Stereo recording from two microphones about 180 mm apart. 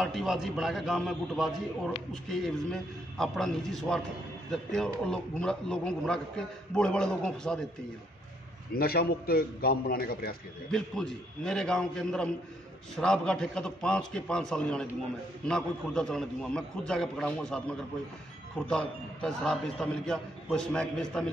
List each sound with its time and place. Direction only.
0.0 s a man's voice: centre (ahead or behind)
8.7 s a man's voice: 55° left (ahead or behind)
10.7 s a man's voice: 5° left (ahead or behind)